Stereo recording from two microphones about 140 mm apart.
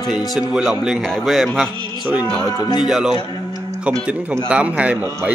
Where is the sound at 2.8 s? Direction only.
5° right (ahead or behind).